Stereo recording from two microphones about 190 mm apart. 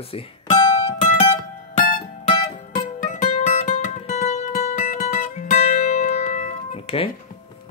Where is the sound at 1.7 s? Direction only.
40° left (ahead or behind).